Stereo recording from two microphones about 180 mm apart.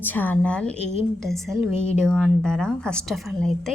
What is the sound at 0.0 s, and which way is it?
A woman's voice, 10° left (ahead or behind).